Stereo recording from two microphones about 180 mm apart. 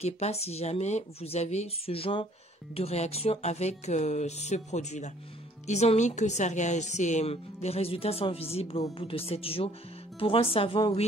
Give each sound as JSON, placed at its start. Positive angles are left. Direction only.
{"t": 0.0, "sound": "a woman's voice", "side_deg": 35}